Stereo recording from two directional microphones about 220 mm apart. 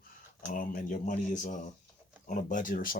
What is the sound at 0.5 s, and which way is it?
Speech, 40° left (ahead or behind).